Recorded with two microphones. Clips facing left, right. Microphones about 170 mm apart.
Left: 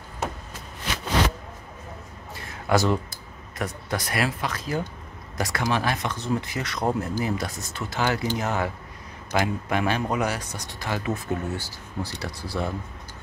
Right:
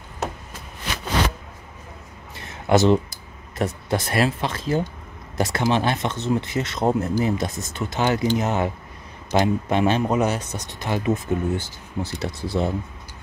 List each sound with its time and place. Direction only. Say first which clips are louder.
2.6 s speech: right 5 dB; 25° right (ahead or behind)